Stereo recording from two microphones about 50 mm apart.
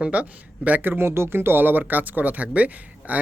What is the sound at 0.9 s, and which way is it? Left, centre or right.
Speech, right.